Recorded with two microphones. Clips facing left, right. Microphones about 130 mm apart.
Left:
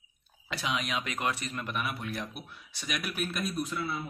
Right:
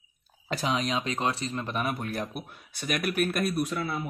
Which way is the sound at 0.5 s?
40° right (ahead or behind).